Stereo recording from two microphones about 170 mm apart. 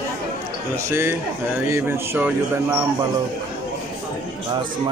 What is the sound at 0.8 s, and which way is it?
Speech, 15° right (ahead or behind).